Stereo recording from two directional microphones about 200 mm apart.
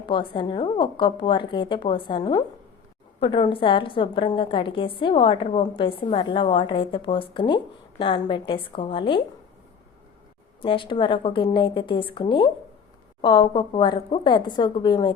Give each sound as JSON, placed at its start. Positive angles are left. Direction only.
{"t": 0.0, "sound": "a woman's voice", "side_deg": 25}
{"t": 10.6, "sound": "a woman's voice", "side_deg": 25}